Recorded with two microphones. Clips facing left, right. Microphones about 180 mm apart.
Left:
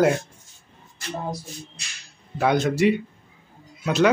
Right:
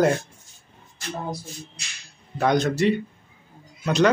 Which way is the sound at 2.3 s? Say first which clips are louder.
Even; 5° left (ahead or behind).